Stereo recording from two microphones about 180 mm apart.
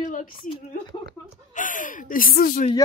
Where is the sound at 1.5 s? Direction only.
45° left (ahead or behind).